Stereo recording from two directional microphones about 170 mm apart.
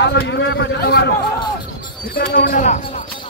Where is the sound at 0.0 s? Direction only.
90° left.